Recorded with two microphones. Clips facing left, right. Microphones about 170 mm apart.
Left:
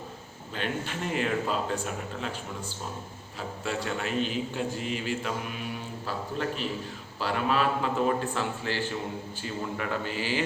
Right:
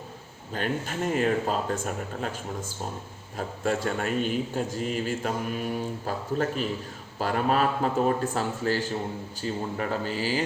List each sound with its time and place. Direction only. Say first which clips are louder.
0.5 s a man's voice: right 3 dB; 45° right (ahead or behind)